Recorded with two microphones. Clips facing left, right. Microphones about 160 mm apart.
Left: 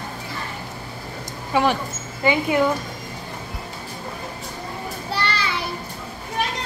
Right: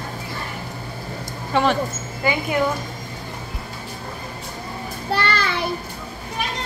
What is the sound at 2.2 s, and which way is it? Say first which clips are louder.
Speech: left 3 dB; 20° left (ahead or behind).